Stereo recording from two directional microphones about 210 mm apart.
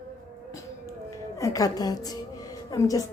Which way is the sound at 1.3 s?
15° left (ahead or behind).